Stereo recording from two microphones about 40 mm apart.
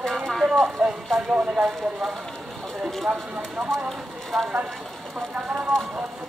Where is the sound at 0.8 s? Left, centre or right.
Centre.